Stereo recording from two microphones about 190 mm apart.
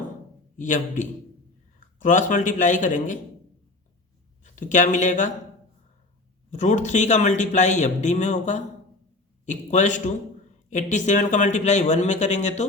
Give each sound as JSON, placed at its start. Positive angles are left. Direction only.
{"t": 0.5, "sound": "a man's voice", "side_deg": 40}
{"t": 4.4, "sound": "speech", "side_deg": 40}
{"t": 6.5, "sound": "a man's voice", "side_deg": 40}